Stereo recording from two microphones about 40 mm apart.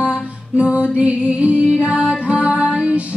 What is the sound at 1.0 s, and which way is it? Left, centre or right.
Music, right.